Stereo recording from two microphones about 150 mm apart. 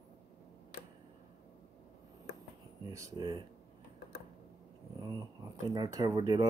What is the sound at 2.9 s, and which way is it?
Speech, 25° right (ahead or behind).